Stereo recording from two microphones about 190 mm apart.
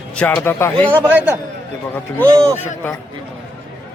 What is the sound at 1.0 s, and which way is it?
Speech, 10° right (ahead or behind).